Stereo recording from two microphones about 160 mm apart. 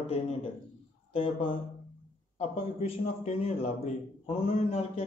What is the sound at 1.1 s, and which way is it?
Speech, 35° left (ahead or behind).